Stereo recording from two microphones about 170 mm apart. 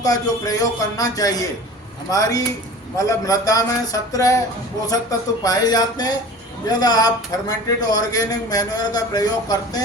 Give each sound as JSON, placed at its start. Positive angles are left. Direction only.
{"t": 0.0, "sound": "speech", "side_deg": 20}